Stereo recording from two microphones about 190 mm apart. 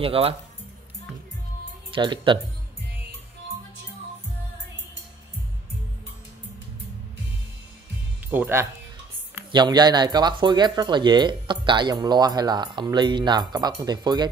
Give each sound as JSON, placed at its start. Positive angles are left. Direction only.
{"t": 0.0, "sound": "speech", "side_deg": -30}
{"t": 1.9, "sound": "speech", "side_deg": -25}
{"t": 8.3, "sound": "speech", "side_deg": -10}
{"t": 9.5, "sound": "speech", "side_deg": -20}